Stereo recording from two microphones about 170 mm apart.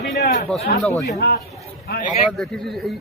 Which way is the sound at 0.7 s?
65° left (ahead or behind).